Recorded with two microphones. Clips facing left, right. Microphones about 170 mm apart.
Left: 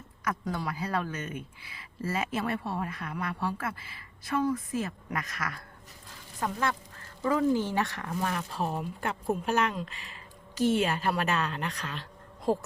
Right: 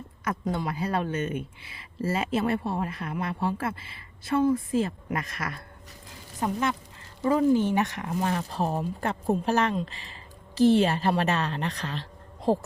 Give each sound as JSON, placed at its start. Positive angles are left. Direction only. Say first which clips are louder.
{"t": 0.3, "sound": "speech", "louder": "right 3 dB", "side_deg": -25}